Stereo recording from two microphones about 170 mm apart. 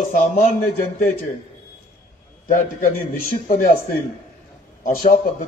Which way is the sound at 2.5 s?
50° left (ahead or behind).